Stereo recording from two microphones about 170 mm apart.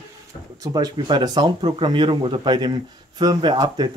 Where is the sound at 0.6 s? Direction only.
25° right (ahead or behind).